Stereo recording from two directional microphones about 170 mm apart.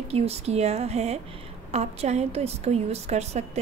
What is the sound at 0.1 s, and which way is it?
A woman's voice, 35° right (ahead or behind).